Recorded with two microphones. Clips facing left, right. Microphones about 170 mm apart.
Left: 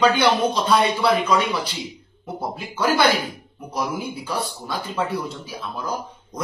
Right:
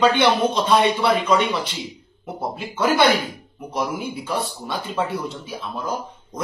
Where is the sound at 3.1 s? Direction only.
5° right (ahead or behind).